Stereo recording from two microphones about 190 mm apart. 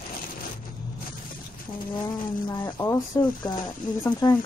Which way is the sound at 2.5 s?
25° left (ahead or behind).